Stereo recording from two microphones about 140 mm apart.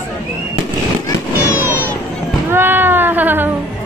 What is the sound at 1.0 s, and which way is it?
Fireworks, 15° left (ahead or behind).